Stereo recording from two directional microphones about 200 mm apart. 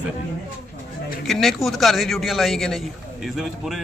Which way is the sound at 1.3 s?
Centre (ahead or behind).